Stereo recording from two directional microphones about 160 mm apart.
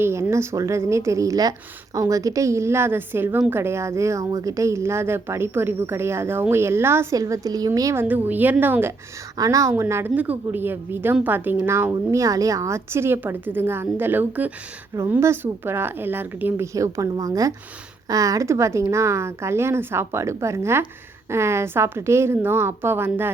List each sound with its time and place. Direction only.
0.0 s a woman's voice: 15° right (ahead or behind)